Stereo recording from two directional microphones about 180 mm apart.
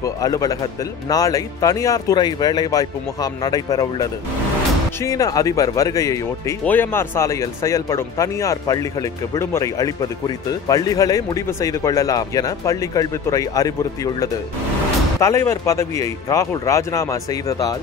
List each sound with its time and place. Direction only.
0.0 s speech: 20° left (ahead or behind)